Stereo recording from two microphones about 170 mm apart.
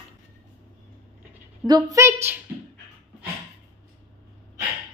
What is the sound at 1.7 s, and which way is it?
Speech, 20° right (ahead or behind).